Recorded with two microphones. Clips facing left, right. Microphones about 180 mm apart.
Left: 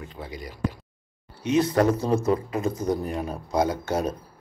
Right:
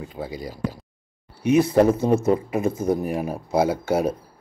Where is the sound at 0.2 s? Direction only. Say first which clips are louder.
Right 7 dB; 35° right (ahead or behind).